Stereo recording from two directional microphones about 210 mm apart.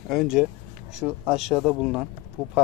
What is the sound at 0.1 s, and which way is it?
Speech, centre (ahead or behind).